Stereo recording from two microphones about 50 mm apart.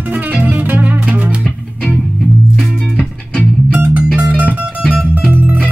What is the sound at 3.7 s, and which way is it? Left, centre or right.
Music, right.